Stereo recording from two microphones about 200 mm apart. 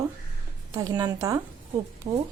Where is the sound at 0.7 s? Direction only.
20° right (ahead or behind).